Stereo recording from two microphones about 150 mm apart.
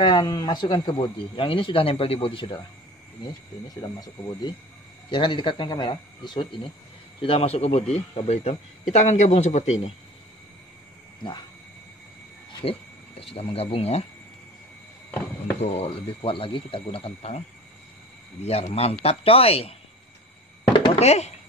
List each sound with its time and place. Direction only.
0.0 s speech: 30° left (ahead or behind)
5.1 s a man's voice: 35° left (ahead or behind); by 9.9 s 50° left (ahead or behind)
12.6 s speech: 40° left (ahead or behind)
15.0 s walk: 10° left (ahead or behind)
15.6 s speech: 45° left (ahead or behind)
18.4 s speech: 45° left (ahead or behind)
20.7 s a sound: 40° left (ahead or behind)